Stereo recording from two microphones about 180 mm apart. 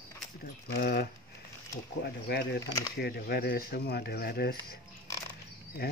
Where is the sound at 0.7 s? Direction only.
60° left (ahead or behind).